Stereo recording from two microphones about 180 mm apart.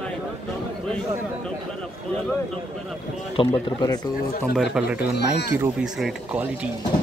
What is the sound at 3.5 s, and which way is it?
Speech, 20° left (ahead or behind).